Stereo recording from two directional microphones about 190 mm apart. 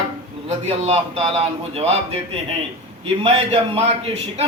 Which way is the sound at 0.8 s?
35° right (ahead or behind).